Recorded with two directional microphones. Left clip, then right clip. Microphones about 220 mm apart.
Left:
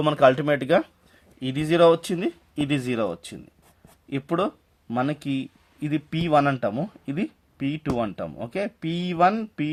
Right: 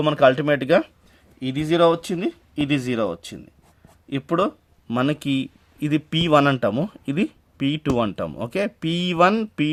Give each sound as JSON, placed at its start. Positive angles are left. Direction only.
{"t": 0.0, "sound": "speech", "side_deg": -5}
{"t": 1.4, "sound": "speech", "side_deg": 0}